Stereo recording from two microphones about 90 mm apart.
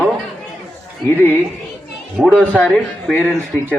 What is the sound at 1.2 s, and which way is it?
Speech, 20° left (ahead or behind).